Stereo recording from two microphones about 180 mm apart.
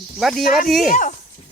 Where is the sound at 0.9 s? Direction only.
45° left (ahead or behind).